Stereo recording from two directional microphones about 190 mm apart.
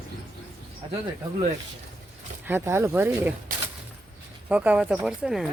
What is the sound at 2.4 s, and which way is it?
Speech, 10° right (ahead or behind).